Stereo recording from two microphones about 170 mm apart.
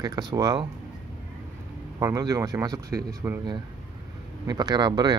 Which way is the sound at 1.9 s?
20° right (ahead or behind).